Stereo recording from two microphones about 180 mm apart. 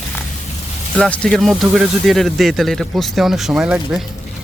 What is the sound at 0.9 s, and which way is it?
Speech, 5° left (ahead or behind).